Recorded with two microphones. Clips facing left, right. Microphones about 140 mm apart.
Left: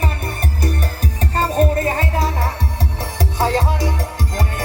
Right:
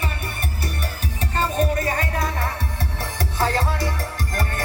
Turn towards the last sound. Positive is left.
turn(degrees=20)  # may be behind; listen again after turning